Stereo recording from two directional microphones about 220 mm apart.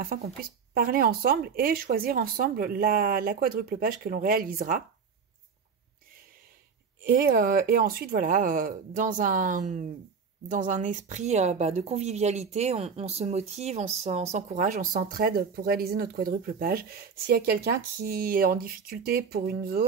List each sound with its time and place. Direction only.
0.0 s speech: 40° right (ahead or behind)
7.1 s speech: 45° right (ahead or behind)